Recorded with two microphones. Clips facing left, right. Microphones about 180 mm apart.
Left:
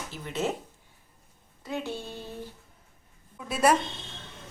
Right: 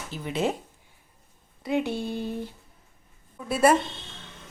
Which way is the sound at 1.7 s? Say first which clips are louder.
Right 7 dB; 15° right (ahead or behind).